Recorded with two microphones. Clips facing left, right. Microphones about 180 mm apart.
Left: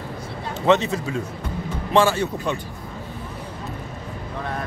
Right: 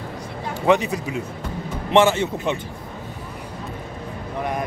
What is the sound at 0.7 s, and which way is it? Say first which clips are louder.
A man's voice: even; 15° right (ahead or behind).